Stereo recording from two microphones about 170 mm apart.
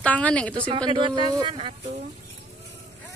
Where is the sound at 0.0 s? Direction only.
10° left (ahead or behind).